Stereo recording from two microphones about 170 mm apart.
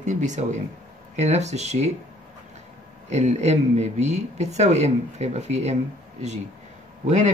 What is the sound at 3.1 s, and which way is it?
Speech, 40° right (ahead or behind).